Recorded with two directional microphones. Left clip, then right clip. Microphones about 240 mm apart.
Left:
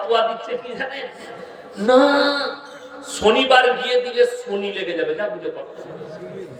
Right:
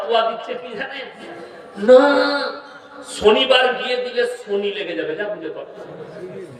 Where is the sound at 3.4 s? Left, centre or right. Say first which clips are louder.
Left 1 dB; centre.